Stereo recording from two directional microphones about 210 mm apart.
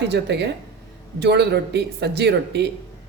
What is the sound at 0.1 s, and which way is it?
Speech, 55° right (ahead or behind).